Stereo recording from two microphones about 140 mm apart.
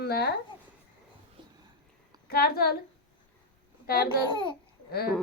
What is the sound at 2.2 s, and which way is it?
Speech, 90° left.